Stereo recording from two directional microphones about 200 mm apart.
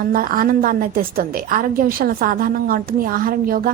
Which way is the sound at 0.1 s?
45° right (ahead or behind).